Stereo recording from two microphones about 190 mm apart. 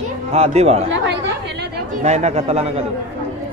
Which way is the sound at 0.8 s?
70° right (ahead or behind).